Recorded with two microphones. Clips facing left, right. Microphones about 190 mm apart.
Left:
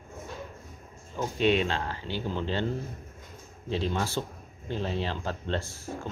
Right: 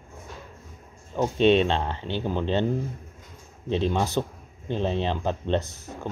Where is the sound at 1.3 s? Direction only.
25° right (ahead or behind).